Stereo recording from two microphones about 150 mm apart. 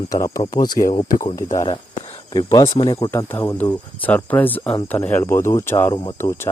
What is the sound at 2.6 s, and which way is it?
Speech, 40° left (ahead or behind).